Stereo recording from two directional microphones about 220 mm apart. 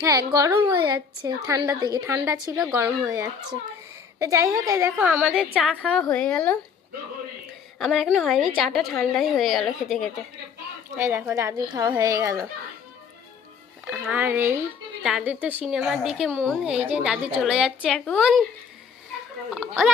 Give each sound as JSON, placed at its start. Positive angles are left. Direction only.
{"t": 0.3, "sound": "a woman's voice", "side_deg": -15}
{"t": 7.8, "sound": "a woman's voice", "side_deg": 0}
{"t": 10.9, "sound": "a woman's voice", "side_deg": -10}
{"t": 13.8, "sound": "a woman's voice", "side_deg": -5}